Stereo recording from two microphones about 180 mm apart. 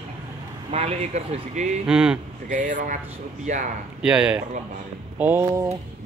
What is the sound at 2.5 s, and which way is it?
Speech, 45° right (ahead or behind).